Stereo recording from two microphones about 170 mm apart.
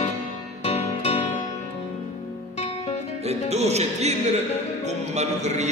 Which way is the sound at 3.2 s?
40° right (ahead or behind).